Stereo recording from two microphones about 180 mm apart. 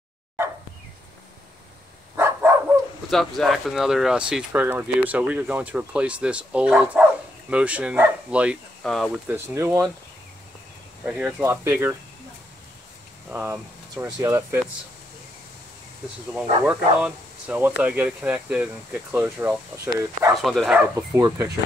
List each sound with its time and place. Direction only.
2.1 s dog: 10° right (ahead or behind)
3.1 s speech: centre (ahead or behind)
9.3 s speech: 15° right (ahead or behind)
11.1 s speech: 5° right (ahead or behind)
13.3 s speech: 10° right (ahead or behind)
16.3 s speech: 5° right (ahead or behind)
20.3 s speech: centre (ahead or behind)